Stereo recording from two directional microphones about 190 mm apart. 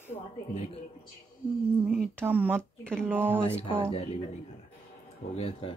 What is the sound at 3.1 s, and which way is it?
Speech, 10° right (ahead or behind).